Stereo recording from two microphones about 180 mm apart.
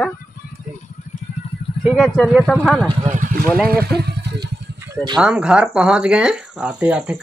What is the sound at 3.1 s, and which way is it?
Speech, 50° right (ahead or behind).